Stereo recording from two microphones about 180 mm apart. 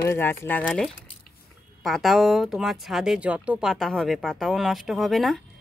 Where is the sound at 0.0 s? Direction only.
15° left (ahead or behind).